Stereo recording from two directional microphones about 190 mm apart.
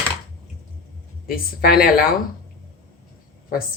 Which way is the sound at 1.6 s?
50° left (ahead or behind).